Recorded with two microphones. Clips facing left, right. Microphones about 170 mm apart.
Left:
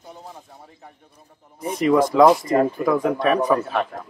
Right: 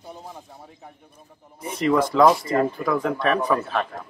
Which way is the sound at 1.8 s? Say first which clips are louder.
Left 3 dB; 10° left (ahead or behind).